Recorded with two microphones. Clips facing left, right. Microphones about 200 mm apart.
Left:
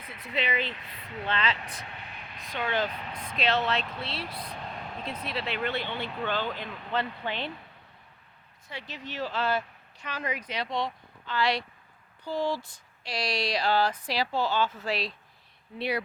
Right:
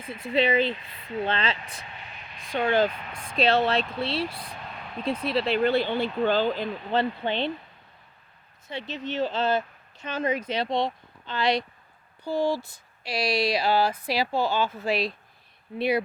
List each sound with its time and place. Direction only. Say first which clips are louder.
0.0 s speech: right 9 dB; 30° right (ahead or behind)
1.9 s a sound: even; 60° left (ahead or behind)
2.7 s speech: right 7 dB; 30° right (ahead or behind)
8.6 s speech: right 7 dB; 25° right (ahead or behind)